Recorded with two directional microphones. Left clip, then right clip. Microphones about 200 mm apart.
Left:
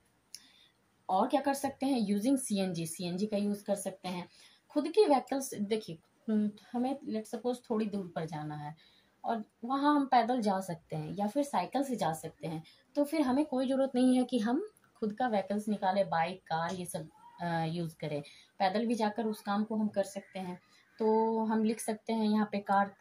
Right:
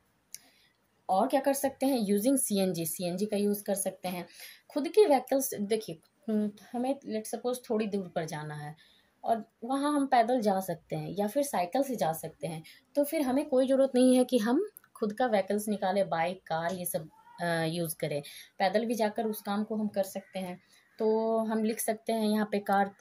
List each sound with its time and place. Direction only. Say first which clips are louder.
1.0 s a woman's voice: right 3 dB; 45° right (ahead or behind)